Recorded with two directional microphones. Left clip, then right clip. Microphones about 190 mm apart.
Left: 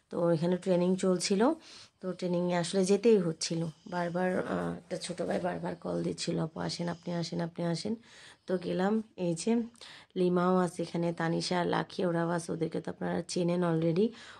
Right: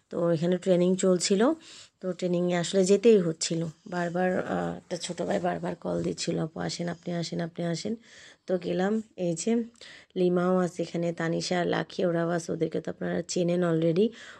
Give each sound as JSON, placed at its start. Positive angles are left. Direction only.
{"t": 0.1, "sound": "speech", "side_deg": -15}